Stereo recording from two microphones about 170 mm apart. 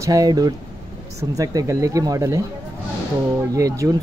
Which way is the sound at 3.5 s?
20° right (ahead or behind).